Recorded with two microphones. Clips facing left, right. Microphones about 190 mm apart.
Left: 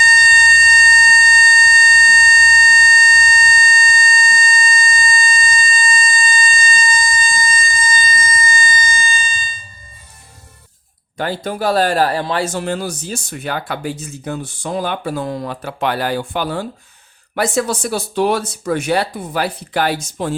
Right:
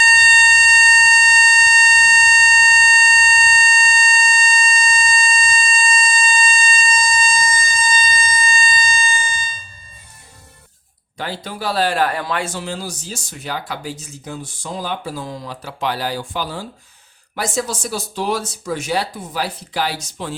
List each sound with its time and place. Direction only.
0.1 s music: 20° left (ahead or behind)
7.0 s siren: 20° left (ahead or behind)
11.2 s speech: 50° left (ahead or behind); by 12.5 s 30° left (ahead or behind)
12.5 s speech: 55° left (ahead or behind)